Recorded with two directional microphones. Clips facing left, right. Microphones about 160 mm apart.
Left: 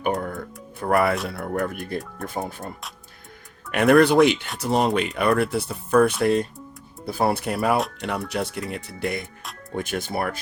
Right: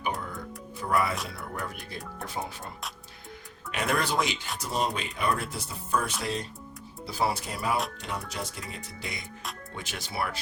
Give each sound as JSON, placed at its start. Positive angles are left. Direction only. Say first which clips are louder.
{"t": 0.0, "sound": "music", "louder": "left 8 dB", "side_deg": 55}
{"t": 0.8, "sound": "speech", "louder": "left 7 dB", "side_deg": 60}
{"t": 3.7, "sound": "speech", "louder": "left 13 dB", "side_deg": 60}